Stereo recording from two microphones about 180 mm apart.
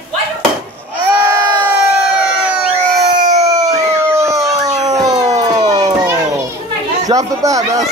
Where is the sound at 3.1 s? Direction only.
40° right (ahead or behind).